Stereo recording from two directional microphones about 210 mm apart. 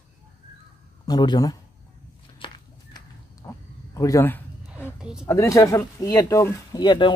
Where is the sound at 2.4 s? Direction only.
25° left (ahead or behind).